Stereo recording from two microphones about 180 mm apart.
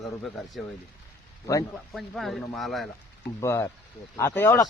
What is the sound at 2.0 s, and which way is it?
Speech, centre (ahead or behind).